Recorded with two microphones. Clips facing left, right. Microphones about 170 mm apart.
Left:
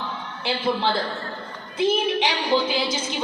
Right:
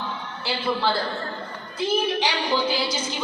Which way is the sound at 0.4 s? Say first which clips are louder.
Left 1 dB; 20° left (ahead or behind).